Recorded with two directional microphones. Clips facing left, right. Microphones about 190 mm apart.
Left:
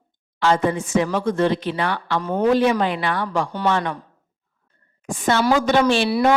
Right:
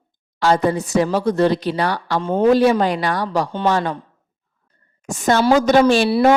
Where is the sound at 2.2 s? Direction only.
25° right (ahead or behind).